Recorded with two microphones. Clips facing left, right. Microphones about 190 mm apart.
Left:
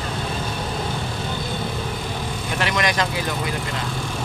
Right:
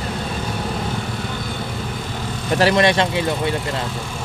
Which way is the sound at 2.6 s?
30° right (ahead or behind).